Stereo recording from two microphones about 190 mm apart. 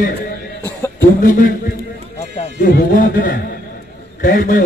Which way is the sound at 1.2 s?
45° left (ahead or behind).